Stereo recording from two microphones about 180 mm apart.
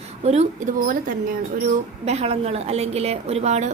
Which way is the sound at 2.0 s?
35° right (ahead or behind).